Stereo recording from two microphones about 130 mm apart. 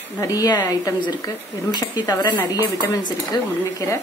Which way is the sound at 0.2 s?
25° left (ahead or behind).